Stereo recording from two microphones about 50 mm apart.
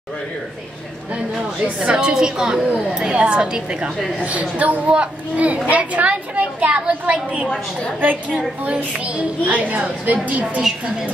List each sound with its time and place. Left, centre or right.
1.8 s a woman's voice: centre